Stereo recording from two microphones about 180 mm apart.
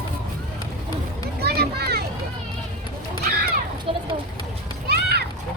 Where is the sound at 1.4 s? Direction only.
60° right (ahead or behind).